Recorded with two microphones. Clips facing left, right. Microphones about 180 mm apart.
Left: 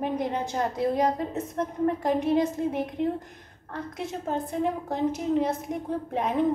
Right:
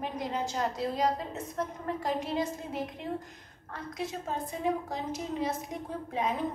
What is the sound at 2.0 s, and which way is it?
Speech, 55° left (ahead or behind).